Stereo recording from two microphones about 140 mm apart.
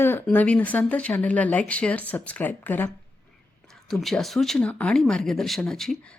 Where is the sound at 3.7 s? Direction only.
Centre (ahead or behind).